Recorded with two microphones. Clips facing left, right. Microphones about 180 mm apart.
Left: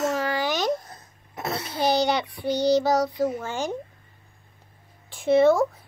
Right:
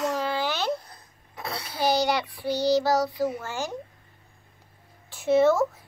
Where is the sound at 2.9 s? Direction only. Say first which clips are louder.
Left 2 dB; 5° right (ahead or behind).